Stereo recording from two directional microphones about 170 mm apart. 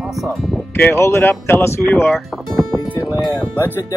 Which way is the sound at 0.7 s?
15° left (ahead or behind).